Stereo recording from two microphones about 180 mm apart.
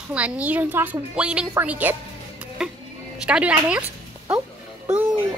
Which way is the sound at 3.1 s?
5° right (ahead or behind).